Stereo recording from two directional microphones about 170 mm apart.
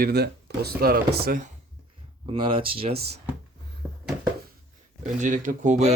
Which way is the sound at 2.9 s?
70° right (ahead or behind).